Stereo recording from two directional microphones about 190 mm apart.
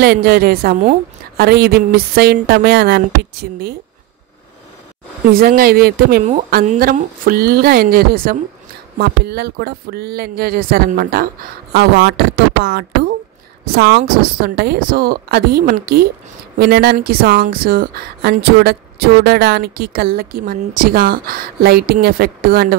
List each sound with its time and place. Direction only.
0.0 s a woman's voice: 55° right (ahead or behind)
5.3 s a woman's voice: 50° right (ahead or behind)
6.2 s a woman's voice: 40° right (ahead or behind)